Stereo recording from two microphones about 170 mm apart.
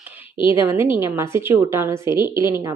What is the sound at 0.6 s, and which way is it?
A woman's voice, 15° right (ahead or behind).